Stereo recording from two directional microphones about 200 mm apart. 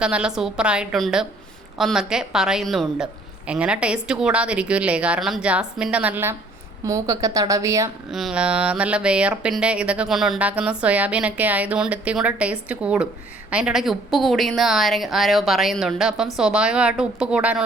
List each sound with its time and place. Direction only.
0.0 s speech: 5° right (ahead or behind)
8.1 s speech: 5° right (ahead or behind)